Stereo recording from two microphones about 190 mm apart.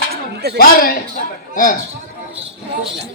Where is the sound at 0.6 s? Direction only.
50° left (ahead or behind).